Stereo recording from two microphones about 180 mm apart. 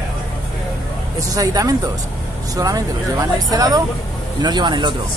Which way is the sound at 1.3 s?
20° right (ahead or behind).